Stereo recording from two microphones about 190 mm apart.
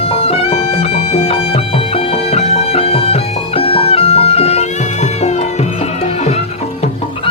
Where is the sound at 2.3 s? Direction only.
30° left (ahead or behind).